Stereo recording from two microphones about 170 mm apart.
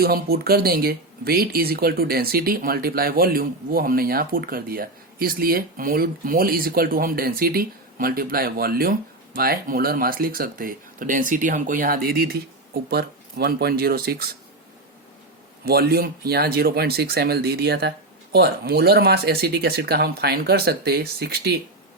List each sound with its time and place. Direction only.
0.0 s speech: 65° right (ahead or behind)
15.6 s speech: 65° right (ahead or behind)